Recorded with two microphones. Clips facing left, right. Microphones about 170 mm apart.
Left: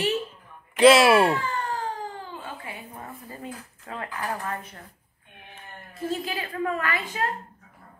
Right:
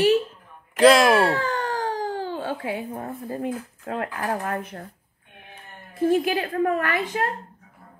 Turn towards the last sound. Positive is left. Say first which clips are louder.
# right 4 dB
turn(degrees=-50)  # may be behind; listen again after turning